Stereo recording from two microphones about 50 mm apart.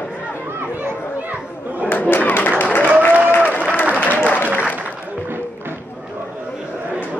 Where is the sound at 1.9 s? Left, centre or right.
Left.